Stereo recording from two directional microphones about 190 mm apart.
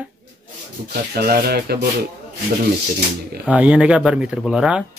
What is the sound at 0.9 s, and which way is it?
Speech, 55° right (ahead or behind).